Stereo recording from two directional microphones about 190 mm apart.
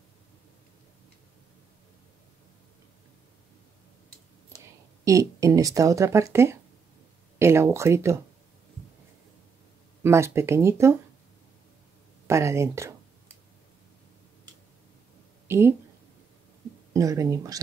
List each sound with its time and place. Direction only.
5.0 s speech: 15° right (ahead or behind)
10.0 s speech: 15° right (ahead or behind)
12.3 s speech: 15° right (ahead or behind)
15.4 s a sound: 15° right (ahead or behind)
16.9 s speech: 15° right (ahead or behind)